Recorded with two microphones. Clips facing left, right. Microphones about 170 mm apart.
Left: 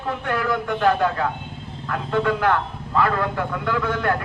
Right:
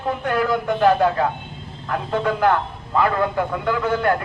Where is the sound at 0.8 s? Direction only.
15° right (ahead or behind).